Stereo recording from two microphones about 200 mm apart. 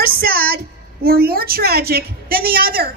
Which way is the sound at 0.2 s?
50° right (ahead or behind).